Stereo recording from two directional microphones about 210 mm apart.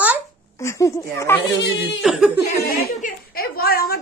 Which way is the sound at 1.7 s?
55° left (ahead or behind).